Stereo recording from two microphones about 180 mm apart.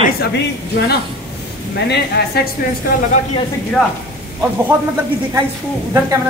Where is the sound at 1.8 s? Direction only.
65° left (ahead or behind).